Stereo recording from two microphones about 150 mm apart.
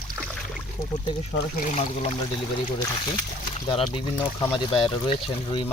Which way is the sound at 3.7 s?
30° left (ahead or behind).